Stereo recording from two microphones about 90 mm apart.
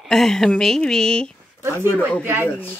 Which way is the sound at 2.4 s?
20° left (ahead or behind).